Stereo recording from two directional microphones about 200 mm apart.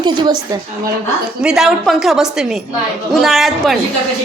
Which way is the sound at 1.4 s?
5° right (ahead or behind).